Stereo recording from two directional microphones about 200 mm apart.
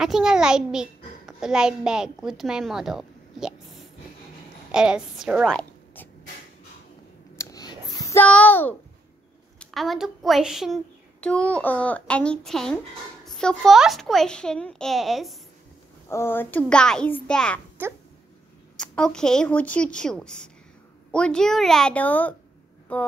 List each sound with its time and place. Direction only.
0.0 s a child's voice: 5° right (ahead or behind)
7.3 s whispering: 15° left (ahead or behind)
7.9 s a child's voice: 15° left (ahead or behind); by 15.3 s centre (ahead or behind)
16.1 s a child's voice: 10° left (ahead or behind)
17.8 s a sound: 10° right (ahead or behind)
18.8 s a child's voice: 5° left (ahead or behind)
22.9 s a sound: 10° left (ahead or behind)